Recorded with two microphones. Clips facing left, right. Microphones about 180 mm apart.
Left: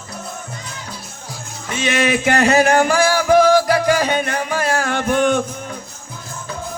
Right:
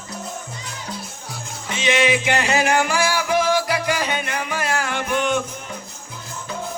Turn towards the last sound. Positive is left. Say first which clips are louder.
# left 5 dB
turn(degrees=45)  # may be behind; listen again after turning